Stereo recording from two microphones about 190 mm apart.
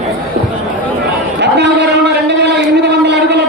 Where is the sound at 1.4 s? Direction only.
65° right (ahead or behind).